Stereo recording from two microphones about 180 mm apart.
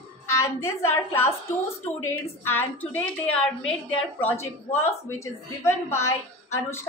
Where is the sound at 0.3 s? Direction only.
15° left (ahead or behind).